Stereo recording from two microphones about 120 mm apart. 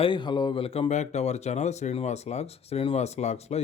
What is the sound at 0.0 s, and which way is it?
Speech, 40° left (ahead or behind).